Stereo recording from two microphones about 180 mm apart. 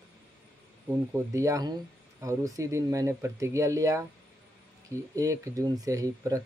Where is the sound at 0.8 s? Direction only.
15° right (ahead or behind).